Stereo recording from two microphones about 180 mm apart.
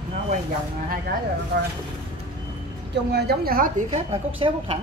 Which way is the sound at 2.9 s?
65° right (ahead or behind).